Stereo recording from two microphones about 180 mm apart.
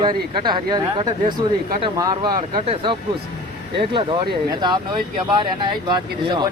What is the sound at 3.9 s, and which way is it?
Speech, 25° right (ahead or behind).